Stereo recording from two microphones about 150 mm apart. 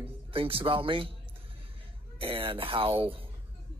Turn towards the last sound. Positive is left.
turn(degrees=-35)  # may be behind; listen again after turning